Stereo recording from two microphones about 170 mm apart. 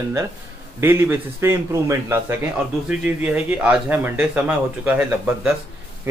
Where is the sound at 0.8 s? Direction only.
15° right (ahead or behind).